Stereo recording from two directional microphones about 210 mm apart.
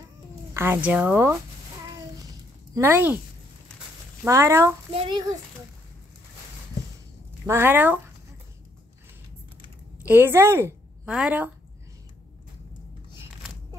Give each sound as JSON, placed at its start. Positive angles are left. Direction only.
{"t": 0.6, "sound": "speech", "side_deg": -10}
{"t": 1.9, "sound": "a sound", "side_deg": -15}
{"t": 4.2, "sound": "speech", "side_deg": -10}
{"t": 4.9, "sound": "a child's voice", "side_deg": -25}
{"t": 7.4, "sound": "speech", "side_deg": -10}
{"t": 10.0, "sound": "a woman's voice", "side_deg": -10}
{"t": 13.4, "sound": "a sound", "side_deg": 0}